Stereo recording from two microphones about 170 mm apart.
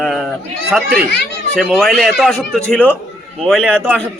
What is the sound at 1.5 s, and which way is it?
A man's voice, centre (ahead or behind).